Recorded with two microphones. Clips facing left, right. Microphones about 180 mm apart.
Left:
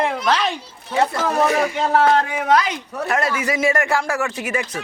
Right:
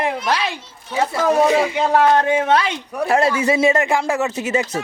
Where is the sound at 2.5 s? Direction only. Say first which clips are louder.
Even; 30° right (ahead or behind).